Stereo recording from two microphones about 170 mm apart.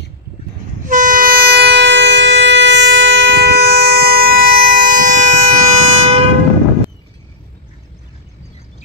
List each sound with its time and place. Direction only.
0.8 s train: 50° right (ahead or behind)